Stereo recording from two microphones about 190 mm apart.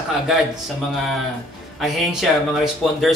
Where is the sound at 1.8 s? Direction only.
Centre (ahead or behind).